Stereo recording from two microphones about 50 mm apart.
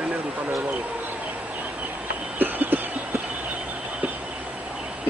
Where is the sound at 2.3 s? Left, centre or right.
Right.